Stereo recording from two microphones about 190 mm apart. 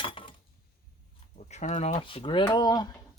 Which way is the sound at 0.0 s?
25° left (ahead or behind).